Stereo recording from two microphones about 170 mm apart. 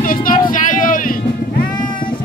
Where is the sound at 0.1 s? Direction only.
55° left (ahead or behind).